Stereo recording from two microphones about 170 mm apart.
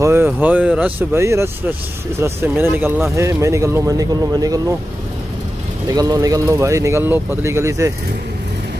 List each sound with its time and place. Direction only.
0.0 s speech: 15° right (ahead or behind)
5.9 s speech: 20° right (ahead or behind)